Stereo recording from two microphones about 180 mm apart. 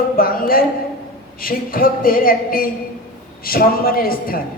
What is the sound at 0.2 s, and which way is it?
A woman's voice, 55° left (ahead or behind).